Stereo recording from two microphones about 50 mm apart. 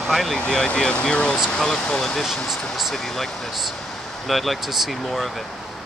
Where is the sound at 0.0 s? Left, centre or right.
Centre.